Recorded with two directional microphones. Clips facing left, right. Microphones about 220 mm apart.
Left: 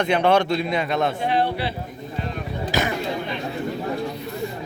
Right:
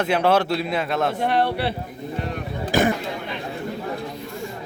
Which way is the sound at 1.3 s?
65° right (ahead or behind).